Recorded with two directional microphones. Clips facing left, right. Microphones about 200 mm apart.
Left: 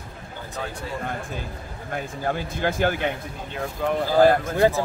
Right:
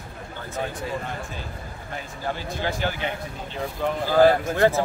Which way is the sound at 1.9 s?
50° left (ahead or behind).